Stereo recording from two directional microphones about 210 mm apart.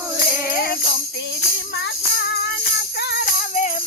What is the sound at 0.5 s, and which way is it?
Music, 45° left (ahead or behind).